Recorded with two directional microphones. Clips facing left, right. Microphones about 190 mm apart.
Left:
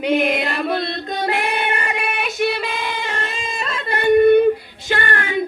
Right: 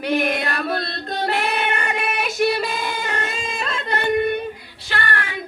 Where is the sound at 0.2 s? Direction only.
5° left (ahead or behind).